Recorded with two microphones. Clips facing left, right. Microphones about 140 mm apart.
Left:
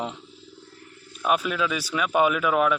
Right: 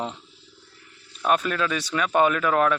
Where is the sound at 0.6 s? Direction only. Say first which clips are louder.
Left 7 dB; 45° left (ahead or behind).